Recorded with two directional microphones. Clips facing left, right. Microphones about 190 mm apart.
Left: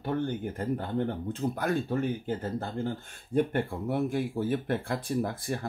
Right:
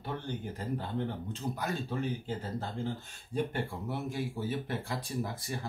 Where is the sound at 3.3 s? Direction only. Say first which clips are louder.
Left 6 dB; 55° left (ahead or behind).